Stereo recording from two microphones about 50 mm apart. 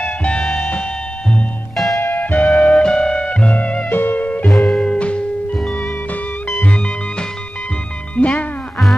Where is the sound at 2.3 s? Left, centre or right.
Left.